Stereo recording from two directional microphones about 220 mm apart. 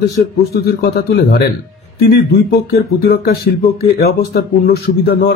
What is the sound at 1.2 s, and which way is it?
A man's voice, 45° left (ahead or behind).